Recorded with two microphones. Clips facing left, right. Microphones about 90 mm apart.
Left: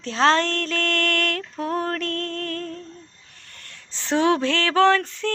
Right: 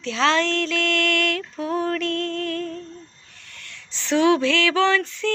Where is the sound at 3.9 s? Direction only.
40° left (ahead or behind).